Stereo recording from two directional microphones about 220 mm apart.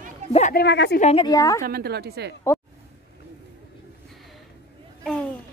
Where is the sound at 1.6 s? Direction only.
45° right (ahead or behind).